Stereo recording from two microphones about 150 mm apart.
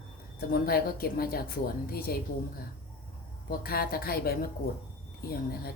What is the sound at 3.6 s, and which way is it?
Speech, 85° left.